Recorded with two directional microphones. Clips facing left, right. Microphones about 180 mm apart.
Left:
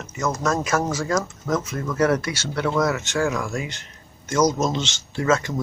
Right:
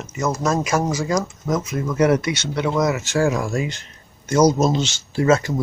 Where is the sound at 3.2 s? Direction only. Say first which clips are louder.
Right 4 dB; 35° right (ahead or behind).